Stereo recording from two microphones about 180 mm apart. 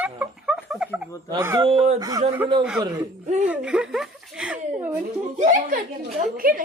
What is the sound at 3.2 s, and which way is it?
Speech, 40° right (ahead or behind).